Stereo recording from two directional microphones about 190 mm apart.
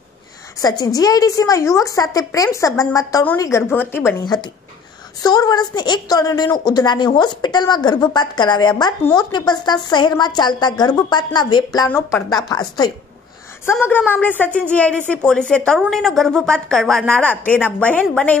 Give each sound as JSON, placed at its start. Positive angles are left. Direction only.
{"t": 0.6, "sound": "a woman's voice", "side_deg": 20}
{"t": 13.7, "sound": "a woman's voice", "side_deg": 10}